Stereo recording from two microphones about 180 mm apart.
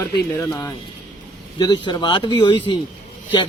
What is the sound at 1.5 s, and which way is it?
Speech, 25° left (ahead or behind).